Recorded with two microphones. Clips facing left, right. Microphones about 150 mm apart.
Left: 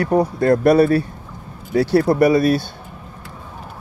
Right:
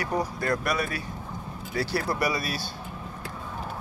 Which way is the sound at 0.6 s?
30° left (ahead or behind).